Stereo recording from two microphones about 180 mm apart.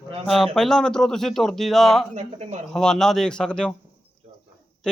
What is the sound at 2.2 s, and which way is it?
Speech, 40° right (ahead or behind).